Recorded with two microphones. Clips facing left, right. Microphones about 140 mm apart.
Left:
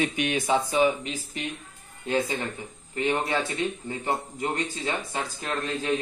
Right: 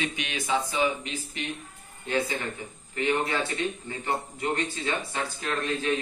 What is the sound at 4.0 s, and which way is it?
A man's voice, 20° left (ahead or behind).